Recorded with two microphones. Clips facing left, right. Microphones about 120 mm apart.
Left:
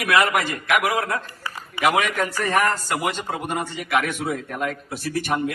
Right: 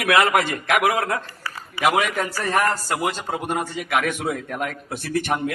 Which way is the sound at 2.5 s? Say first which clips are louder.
Right 1 dB; 35° right (ahead or behind).